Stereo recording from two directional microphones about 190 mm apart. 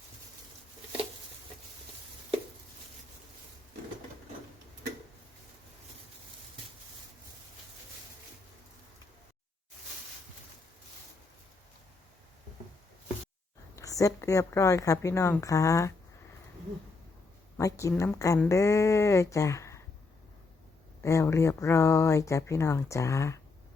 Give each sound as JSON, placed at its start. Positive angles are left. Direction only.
{"t": 13.7, "sound": "speech", "side_deg": 15}
{"t": 17.6, "sound": "speech", "side_deg": 15}
{"t": 21.0, "sound": "speech", "side_deg": 15}